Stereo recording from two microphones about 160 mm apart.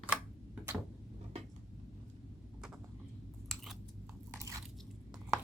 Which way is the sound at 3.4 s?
Centre (ahead or behind).